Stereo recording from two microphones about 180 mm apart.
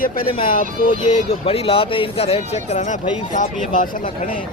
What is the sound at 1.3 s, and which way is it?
Speech, 35° left (ahead or behind).